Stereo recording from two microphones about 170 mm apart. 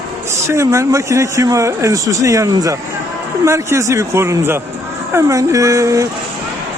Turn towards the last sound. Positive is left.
turn(degrees=-20)  # may be behind; listen again after turning